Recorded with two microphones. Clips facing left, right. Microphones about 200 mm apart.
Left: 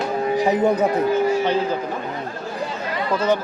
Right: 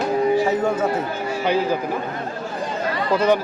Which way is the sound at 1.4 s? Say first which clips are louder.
Even; 10° right (ahead or behind).